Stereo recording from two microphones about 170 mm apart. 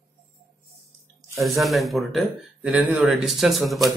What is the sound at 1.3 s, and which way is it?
Speech, centre (ahead or behind).